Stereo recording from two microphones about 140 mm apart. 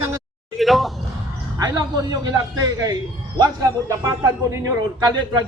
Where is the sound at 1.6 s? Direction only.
30° right (ahead or behind).